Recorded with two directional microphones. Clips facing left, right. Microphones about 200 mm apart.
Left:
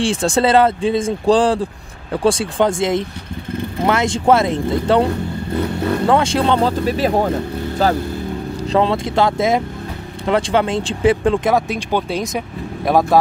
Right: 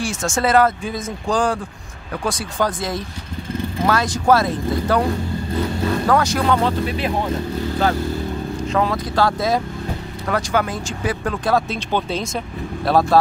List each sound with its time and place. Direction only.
0.0 s speech: 30° left (ahead or behind)
5.6 s speech: 60° left (ahead or behind)
6.0 s speech: 25° left (ahead or behind)
8.7 s speech: 25° left (ahead or behind)